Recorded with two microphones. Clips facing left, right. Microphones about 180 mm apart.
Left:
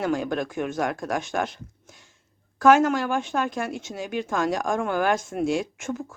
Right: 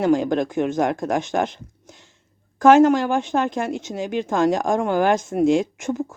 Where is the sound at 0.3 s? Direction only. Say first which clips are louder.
Right 6 dB; 20° right (ahead or behind).